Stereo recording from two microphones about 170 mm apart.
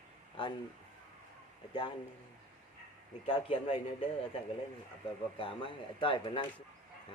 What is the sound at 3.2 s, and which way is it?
Speech, 30° left (ahead or behind).